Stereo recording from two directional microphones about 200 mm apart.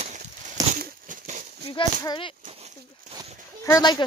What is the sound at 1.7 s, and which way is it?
Speech, 20° left (ahead or behind).